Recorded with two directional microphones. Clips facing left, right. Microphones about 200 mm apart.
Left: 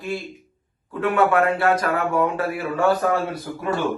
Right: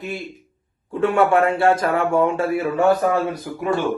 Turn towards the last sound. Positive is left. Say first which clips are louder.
# right 3 dB
turn(degrees=-20)  # may be behind; listen again after turning